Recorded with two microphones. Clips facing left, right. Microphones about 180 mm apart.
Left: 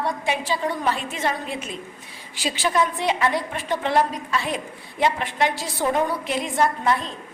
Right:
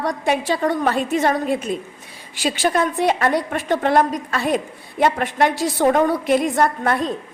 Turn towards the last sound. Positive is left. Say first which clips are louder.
# right 2 dB
turn(degrees=-55)  # may be behind; listen again after turning